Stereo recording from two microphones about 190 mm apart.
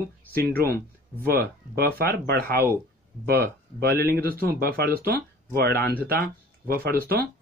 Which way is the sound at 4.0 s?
55° right (ahead or behind).